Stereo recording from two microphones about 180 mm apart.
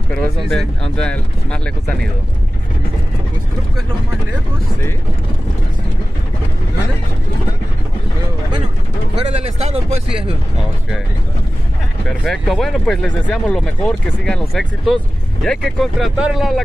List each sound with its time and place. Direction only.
0.1 s speech: 5° left (ahead or behind)
9.2 s speech: 35° right (ahead or behind)
12.1 s speech: centre (ahead or behind)